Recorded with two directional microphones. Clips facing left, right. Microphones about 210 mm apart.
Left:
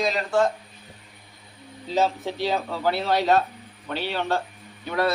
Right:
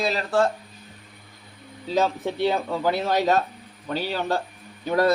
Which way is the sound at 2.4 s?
50° right (ahead or behind).